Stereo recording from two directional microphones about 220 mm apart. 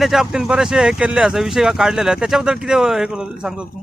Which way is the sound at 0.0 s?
Centre (ahead or behind).